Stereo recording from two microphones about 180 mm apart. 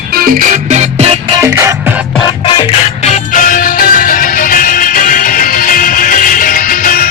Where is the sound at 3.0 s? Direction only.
40° left (ahead or behind).